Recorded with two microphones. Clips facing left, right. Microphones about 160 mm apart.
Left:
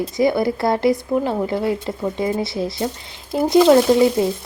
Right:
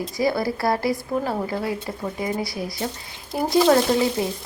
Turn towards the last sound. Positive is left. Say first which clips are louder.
# left 6 dB
turn(degrees=20)  # may be behind; listen again after turning